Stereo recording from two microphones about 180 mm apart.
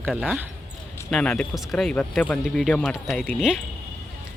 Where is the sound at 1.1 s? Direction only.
5° left (ahead or behind).